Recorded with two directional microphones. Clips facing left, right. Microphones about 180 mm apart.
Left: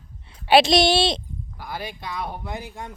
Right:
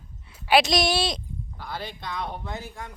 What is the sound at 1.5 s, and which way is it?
Speech, 10° left (ahead or behind).